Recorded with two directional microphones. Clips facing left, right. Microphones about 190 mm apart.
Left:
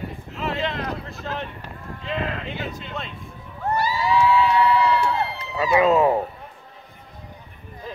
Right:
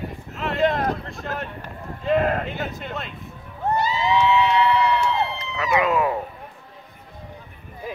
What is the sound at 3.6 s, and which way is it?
Crowd, 20° right (ahead or behind).